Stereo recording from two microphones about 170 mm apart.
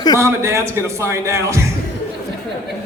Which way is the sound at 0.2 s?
15° right (ahead or behind).